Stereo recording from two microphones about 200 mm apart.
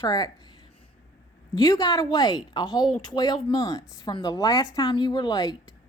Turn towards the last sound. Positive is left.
turn(degrees=20)  # may be behind; listen again after turning